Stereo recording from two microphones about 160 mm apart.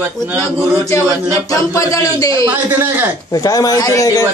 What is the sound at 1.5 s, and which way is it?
Speech, 20° left (ahead or behind).